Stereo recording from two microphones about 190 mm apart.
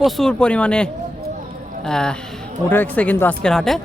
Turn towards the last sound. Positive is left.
turn(degrees=0)  # may be behind; listen again after turning